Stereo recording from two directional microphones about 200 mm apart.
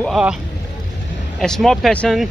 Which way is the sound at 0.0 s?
Centre (ahead or behind).